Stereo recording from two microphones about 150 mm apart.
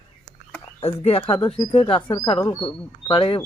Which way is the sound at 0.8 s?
40° left (ahead or behind).